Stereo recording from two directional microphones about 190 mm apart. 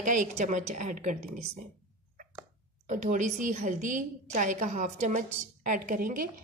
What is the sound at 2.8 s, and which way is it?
A woman's voice, 40° right (ahead or behind).